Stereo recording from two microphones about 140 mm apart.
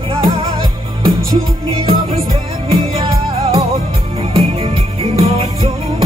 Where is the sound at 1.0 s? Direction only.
35° right (ahead or behind).